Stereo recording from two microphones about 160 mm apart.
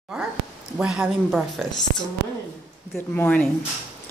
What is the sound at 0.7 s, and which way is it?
Speech, 5° right (ahead or behind).